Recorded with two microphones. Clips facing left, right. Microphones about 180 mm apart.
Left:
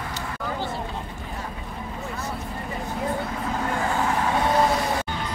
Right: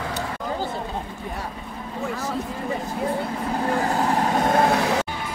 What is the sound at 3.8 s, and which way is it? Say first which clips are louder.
Vehicle: right 2 dB; 35° right (ahead or behind).